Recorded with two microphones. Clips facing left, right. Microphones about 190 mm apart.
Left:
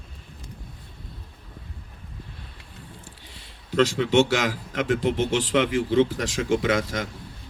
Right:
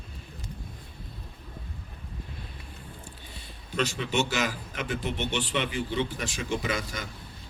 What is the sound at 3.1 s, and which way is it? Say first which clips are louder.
A man's voice: right 1 dB; 90° left.